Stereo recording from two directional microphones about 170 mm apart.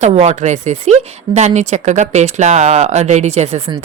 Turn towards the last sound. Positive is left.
turn(degrees=-40)  # may be behind; listen again after turning